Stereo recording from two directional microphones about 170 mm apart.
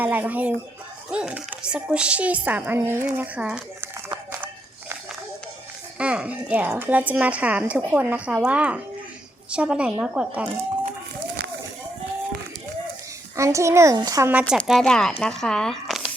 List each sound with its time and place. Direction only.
0.0 s speech: 10° right (ahead or behind)
6.0 s speech: 5° right (ahead or behind)
13.3 s speech: 15° right (ahead or behind)
14.5 s speech: centre (ahead or behind)